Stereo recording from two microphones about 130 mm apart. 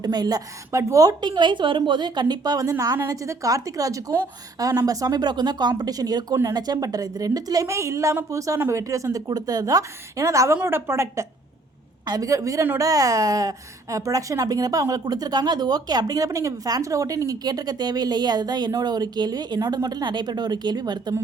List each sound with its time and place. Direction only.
0.0 s a woman's voice: 30° right (ahead or behind)